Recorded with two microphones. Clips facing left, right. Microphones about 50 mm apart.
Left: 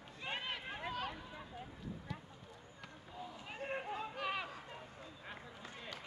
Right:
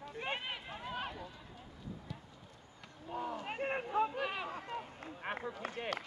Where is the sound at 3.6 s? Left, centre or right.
Right.